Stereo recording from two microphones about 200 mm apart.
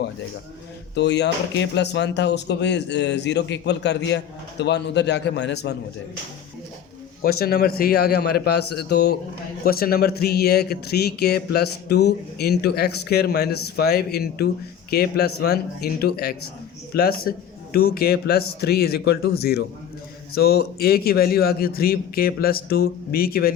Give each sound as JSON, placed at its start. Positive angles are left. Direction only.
{"t": 0.9, "sound": "speech", "side_deg": 60}
{"t": 7.2, "sound": "speech", "side_deg": 50}